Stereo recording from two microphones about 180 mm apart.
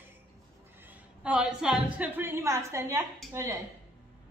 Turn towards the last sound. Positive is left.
turn(degrees=-15)  # may be behind; listen again after turning